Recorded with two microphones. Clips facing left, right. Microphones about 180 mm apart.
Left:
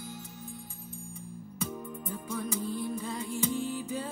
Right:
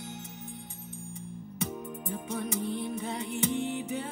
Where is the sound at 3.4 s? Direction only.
70° right (ahead or behind).